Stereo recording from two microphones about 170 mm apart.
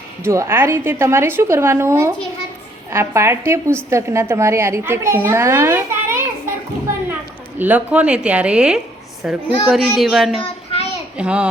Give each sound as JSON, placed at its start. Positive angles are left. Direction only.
{"t": 0.3, "sound": "a woman's voice", "side_deg": -15}
{"t": 7.6, "sound": "a woman's voice", "side_deg": -10}
{"t": 10.4, "sound": "child singing", "side_deg": 35}
{"t": 11.2, "sound": "a woman's voice", "side_deg": -5}